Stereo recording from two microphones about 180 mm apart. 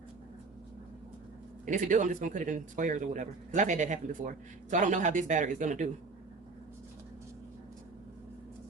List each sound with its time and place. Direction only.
1.6 s speech: 45° right (ahead or behind)